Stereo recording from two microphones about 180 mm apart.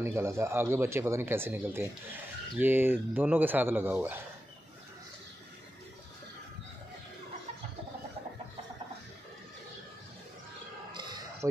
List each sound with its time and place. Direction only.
0.0 s speech: 15° right (ahead or behind)
11.0 s music: 25° right (ahead or behind)